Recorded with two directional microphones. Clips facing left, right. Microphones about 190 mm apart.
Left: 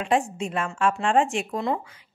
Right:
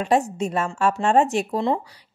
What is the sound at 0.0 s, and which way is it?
A woman's voice, 40° right (ahead or behind).